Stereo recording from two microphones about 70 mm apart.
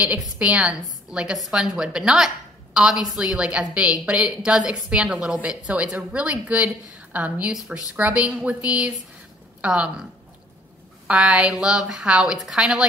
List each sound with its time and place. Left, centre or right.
0.0 s a woman's voice: centre
11.1 s a woman's voice: centre